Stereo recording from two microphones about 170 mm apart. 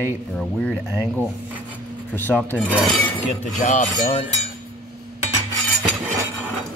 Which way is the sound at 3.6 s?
50° left (ahead or behind).